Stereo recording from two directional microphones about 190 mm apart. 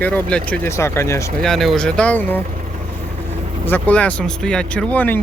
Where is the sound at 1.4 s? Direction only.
Centre (ahead or behind).